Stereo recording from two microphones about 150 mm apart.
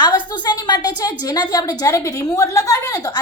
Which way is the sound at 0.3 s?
30° left (ahead or behind).